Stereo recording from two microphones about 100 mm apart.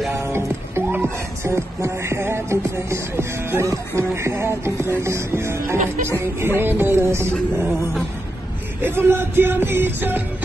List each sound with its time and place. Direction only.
0.1 s music: 25° right (ahead or behind)